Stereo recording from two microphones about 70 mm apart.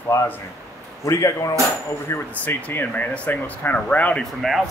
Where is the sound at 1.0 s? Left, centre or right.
Left.